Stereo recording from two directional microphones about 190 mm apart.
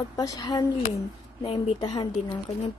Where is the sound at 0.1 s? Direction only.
20° left (ahead or behind).